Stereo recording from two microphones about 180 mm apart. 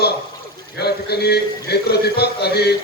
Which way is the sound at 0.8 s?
65° left (ahead or behind).